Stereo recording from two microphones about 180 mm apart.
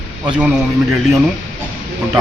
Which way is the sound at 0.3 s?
5° right (ahead or behind).